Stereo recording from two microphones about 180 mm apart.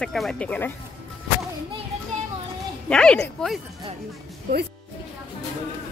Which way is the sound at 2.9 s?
5° left (ahead or behind).